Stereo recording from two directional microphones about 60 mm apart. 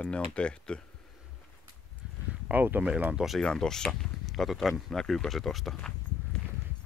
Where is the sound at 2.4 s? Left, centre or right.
Right.